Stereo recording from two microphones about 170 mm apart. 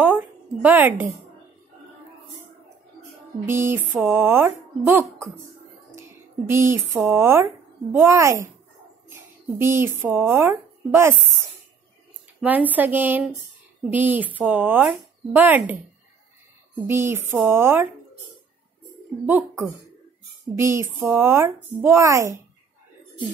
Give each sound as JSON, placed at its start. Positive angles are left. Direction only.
{"t": 0.0, "sound": "a sound", "side_deg": -10}
{"t": 3.4, "sound": "speech", "side_deg": -15}
{"t": 16.8, "sound": "speech", "side_deg": -15}
{"t": 20.5, "sound": "speech", "side_deg": -15}